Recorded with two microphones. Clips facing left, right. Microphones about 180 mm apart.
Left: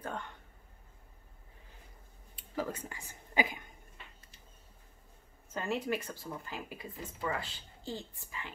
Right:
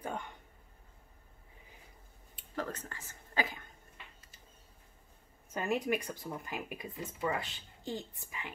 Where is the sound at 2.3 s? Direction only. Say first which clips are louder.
Left 2 dB; 10° left (ahead or behind).